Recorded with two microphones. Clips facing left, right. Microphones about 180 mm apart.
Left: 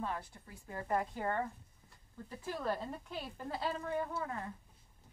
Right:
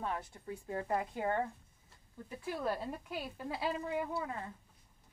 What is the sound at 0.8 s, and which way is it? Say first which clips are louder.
A woman's voice: left 1 dB; 20° right (ahead or behind).